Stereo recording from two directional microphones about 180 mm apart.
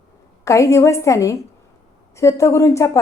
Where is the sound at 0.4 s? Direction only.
15° left (ahead or behind).